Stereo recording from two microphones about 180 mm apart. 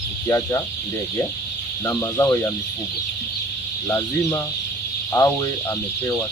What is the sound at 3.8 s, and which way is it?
Speech, 15° left (ahead or behind).